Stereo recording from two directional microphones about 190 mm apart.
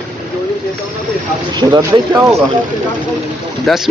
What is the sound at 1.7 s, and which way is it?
Speech, 15° right (ahead or behind).